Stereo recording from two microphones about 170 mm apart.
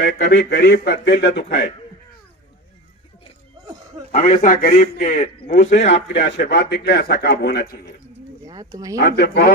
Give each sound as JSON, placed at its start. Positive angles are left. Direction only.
{"t": 0.0, "sound": "speech", "side_deg": 85}
{"t": 4.1, "sound": "a man's voice", "side_deg": 50}
{"t": 6.0, "sound": "speech", "side_deg": 80}
{"t": 8.5, "sound": "speech", "side_deg": -20}
{"t": 9.0, "sound": "speech", "side_deg": 70}